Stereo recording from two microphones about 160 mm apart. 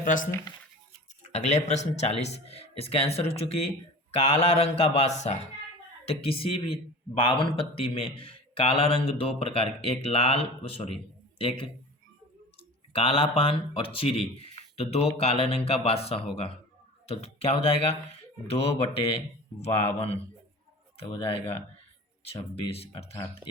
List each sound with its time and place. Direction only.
0.0 s speech: 55° left (ahead or behind)
1.2 s a man's voice: 45° left (ahead or behind)
12.9 s a man's voice: 35° left (ahead or behind)
23.4 s speech: centre (ahead or behind)